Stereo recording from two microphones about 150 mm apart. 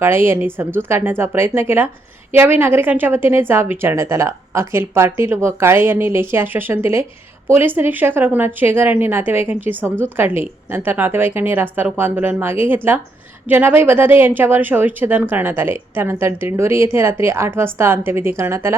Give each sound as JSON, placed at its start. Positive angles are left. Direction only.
{"t": 0.0, "sound": "a woman's voice", "side_deg": -15}